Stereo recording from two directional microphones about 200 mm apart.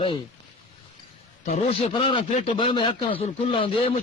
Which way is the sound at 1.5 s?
30° left (ahead or behind).